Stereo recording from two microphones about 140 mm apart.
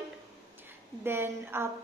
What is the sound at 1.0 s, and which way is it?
Speech, 15° right (ahead or behind).